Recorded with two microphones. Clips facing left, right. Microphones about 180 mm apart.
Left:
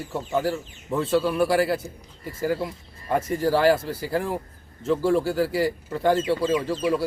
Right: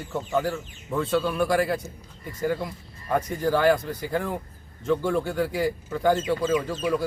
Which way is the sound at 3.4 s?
35° left (ahead or behind).